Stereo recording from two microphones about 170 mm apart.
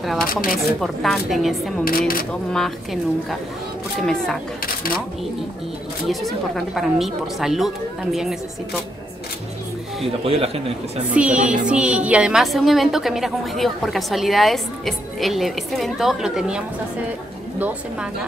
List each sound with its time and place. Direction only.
0.5 s a woman's voice: centre (ahead or behind)
1.9 s speech: 60° left (ahead or behind)
2.5 s a woman's voice: centre (ahead or behind)
6.0 s a woman's voice: centre (ahead or behind)
10.0 s speech: 35° right (ahead or behind)
11.1 s a woman's voice: 5° right (ahead or behind)